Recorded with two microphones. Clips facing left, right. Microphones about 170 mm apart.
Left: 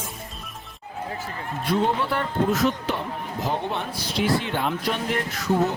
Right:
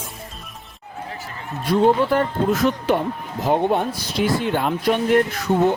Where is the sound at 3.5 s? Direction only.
50° right (ahead or behind).